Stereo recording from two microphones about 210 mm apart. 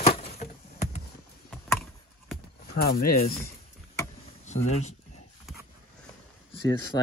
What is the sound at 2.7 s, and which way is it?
Speech, 45° left (ahead or behind).